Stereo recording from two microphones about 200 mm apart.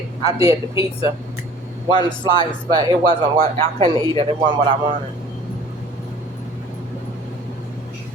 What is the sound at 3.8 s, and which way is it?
Speech, 25° right (ahead or behind).